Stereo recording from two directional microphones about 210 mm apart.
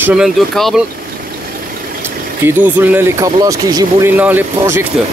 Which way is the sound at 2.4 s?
10° right (ahead or behind).